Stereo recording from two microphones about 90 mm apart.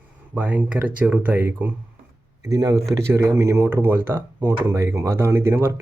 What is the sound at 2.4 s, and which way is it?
Speech, 40° right (ahead or behind).